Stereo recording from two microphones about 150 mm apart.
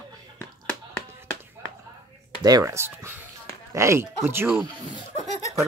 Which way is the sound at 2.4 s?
20° right (ahead or behind).